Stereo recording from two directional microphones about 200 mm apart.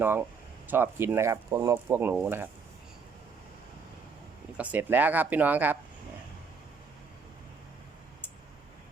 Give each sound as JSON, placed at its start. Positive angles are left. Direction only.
{"t": 0.0, "sound": "speech", "side_deg": -10}
{"t": 4.5, "sound": "speech", "side_deg": -5}